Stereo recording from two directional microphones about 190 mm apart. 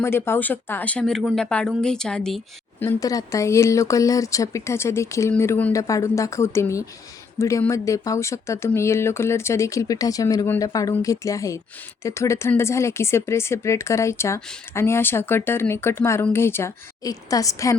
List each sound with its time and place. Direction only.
0.0 s speech: 10° left (ahead or behind)
2.8 s speech: 15° left (ahead or behind)